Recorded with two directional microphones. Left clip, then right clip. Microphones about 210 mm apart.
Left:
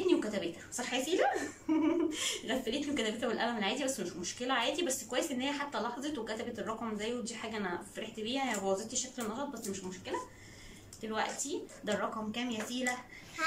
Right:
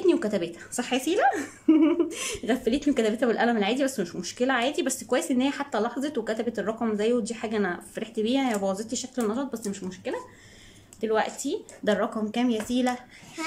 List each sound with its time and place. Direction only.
0.1 s a woman's voice: 60° right (ahead or behind)